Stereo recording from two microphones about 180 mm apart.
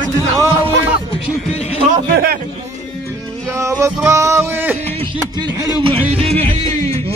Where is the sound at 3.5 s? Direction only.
15° right (ahead or behind).